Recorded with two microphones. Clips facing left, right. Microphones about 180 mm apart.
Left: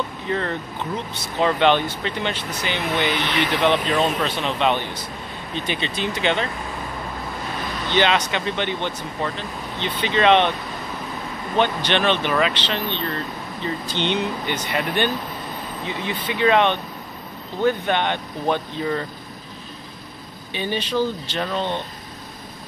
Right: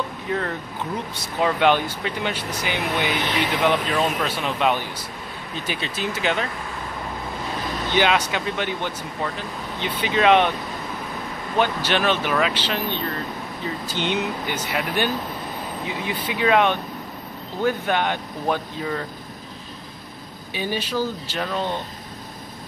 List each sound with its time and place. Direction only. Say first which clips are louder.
0.3 s speech: left 2 dB; 5° right (ahead or behind)
7.9 s speech: left 1 dB; 10° right (ahead or behind)
11.5 s speech: left 1 dB; 5° right (ahead or behind)
20.5 s speech: left 2 dB; 5° right (ahead or behind)